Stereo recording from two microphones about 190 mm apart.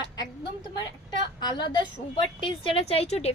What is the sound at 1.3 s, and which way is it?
Speech, 20° left (ahead or behind).